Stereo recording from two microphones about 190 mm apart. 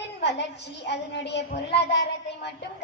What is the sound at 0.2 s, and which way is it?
A woman's voice, 60° left (ahead or behind).